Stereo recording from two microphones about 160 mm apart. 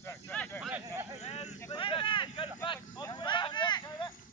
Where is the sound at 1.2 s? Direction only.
40° left (ahead or behind).